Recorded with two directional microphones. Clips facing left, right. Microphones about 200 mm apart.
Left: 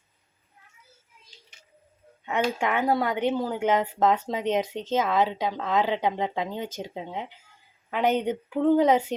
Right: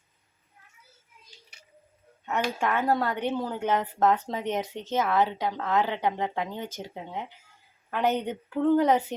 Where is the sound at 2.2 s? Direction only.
15° left (ahead or behind).